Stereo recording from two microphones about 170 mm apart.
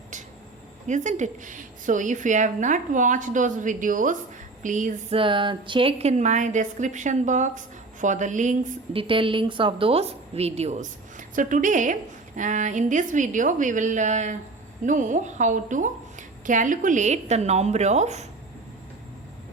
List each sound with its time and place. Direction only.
0.9 s a woman's voice: 45° right (ahead or behind)
5.1 s a woman's voice: 30° right (ahead or behind); by 8.5 s 45° right (ahead or behind)
8.9 s a woman's voice: 30° right (ahead or behind)